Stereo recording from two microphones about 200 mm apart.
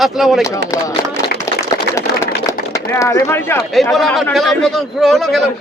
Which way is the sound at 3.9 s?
Centre (ahead or behind).